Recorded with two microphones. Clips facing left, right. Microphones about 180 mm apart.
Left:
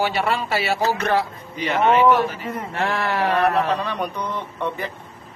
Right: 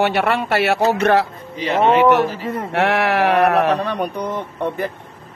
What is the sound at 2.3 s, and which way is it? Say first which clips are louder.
Speech: right 4 dB; 30° right (ahead or behind).